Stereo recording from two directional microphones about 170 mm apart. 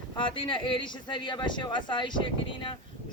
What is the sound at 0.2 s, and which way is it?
Speech, 30° left (ahead or behind).